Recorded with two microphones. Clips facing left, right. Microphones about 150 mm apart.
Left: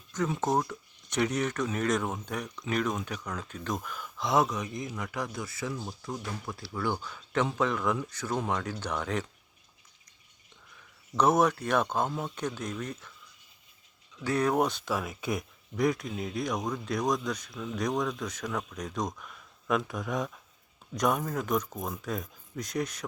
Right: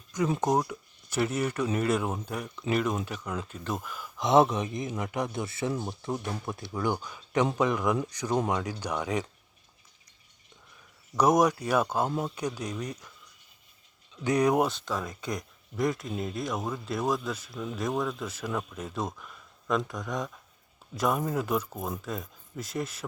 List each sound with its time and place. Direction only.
0.4 s speech: 10° right (ahead or behind)
4.2 s speech: 25° right (ahead or behind)
11.2 s speech: 10° right (ahead or behind)
14.3 s speech: 15° right (ahead or behind)
14.7 s speech: 5° left (ahead or behind)